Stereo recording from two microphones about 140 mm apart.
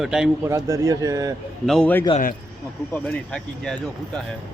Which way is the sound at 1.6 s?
5° left (ahead or behind).